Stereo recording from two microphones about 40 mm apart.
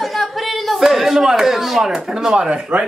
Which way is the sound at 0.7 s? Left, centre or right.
Centre.